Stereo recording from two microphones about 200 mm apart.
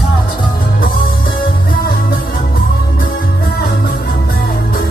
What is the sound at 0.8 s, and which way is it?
Music, 45° left (ahead or behind).